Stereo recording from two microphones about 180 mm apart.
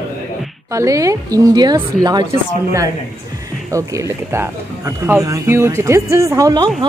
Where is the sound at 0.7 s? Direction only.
15° right (ahead or behind).